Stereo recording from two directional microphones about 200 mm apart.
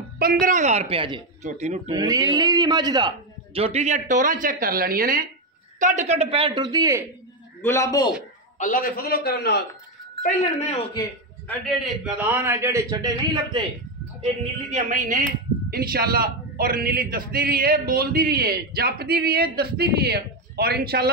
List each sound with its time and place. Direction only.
0.2 s a man's voice: 45° right (ahead or behind); by 1.2 s 25° right (ahead or behind)
1.4 s a man's voice: 35° right (ahead or behind)
1.9 s a man's voice: 20° right (ahead or behind)
7.6 s a man's voice: 15° left (ahead or behind)
8.5 s a man's voice: 40° left (ahead or behind)
11.8 s a man's voice: 5° right (ahead or behind)
14.2 s a man's voice: 35° right (ahead or behind)